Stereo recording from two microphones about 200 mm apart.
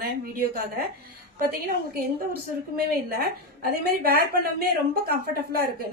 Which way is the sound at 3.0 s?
50° right (ahead or behind).